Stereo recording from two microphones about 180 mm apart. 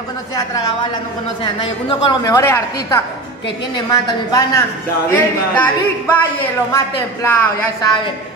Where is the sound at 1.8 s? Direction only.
20° left (ahead or behind).